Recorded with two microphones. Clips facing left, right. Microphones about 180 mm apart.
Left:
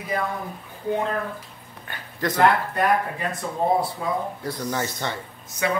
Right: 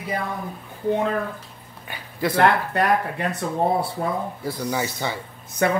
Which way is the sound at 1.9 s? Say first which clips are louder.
Right 2 dB; 10° right (ahead or behind).